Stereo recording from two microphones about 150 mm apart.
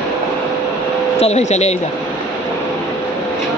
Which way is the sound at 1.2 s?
50° left (ahead or behind).